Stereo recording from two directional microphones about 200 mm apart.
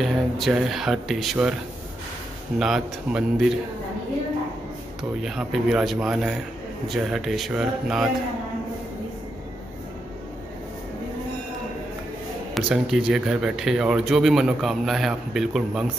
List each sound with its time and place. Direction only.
0.0 s a man's voice: centre (ahead or behind)
2.6 s a man's voice: 5° right (ahead or behind)
5.2 s a man's voice: centre (ahead or behind)
12.5 s a man's voice: centre (ahead or behind)